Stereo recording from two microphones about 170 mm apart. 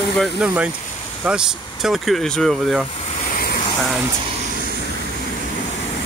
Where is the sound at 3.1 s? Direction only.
55° left (ahead or behind).